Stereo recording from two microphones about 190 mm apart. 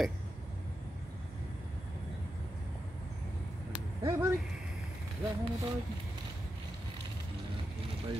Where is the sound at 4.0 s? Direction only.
15° right (ahead or behind).